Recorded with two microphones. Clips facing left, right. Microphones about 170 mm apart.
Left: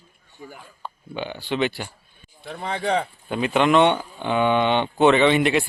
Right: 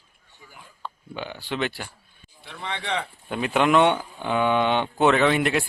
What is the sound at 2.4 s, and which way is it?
Speech, 45° left (ahead or behind).